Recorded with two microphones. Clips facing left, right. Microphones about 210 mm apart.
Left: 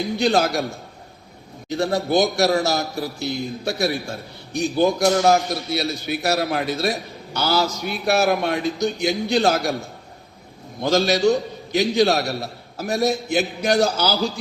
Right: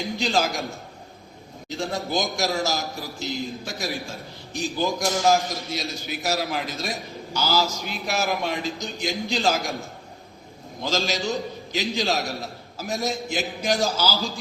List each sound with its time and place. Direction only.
0.2 s a man's voice: 65° left (ahead or behind)
1.7 s a man's voice: 65° left (ahead or behind)
10.8 s a man's voice: 60° left (ahead or behind)